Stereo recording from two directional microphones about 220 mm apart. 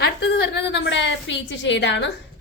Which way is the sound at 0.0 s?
50° left (ahead or behind).